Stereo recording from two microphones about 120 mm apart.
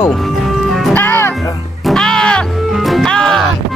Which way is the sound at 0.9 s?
20° left (ahead or behind).